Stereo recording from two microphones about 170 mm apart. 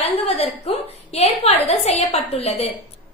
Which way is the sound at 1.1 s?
40° left (ahead or behind).